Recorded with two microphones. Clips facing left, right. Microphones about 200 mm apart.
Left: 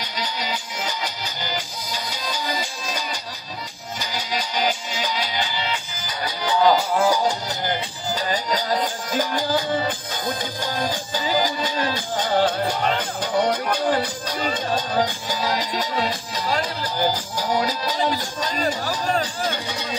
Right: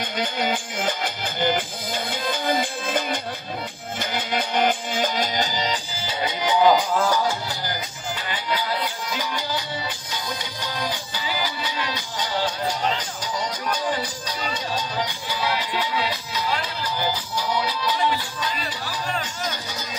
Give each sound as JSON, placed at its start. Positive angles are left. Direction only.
{"t": 0.0, "sound": "music", "side_deg": -50}
{"t": 6.0, "sound": "music", "side_deg": -20}
{"t": 7.0, "sound": "music", "side_deg": 15}
{"t": 8.1, "sound": "music", "side_deg": 40}